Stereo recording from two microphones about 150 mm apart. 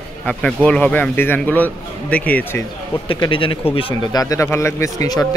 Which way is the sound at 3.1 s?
35° left (ahead or behind).